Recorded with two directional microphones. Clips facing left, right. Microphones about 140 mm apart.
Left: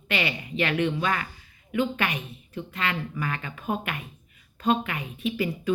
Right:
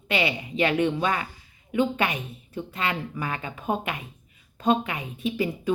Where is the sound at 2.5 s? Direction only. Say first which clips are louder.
Right 1 dB; 30° right (ahead or behind).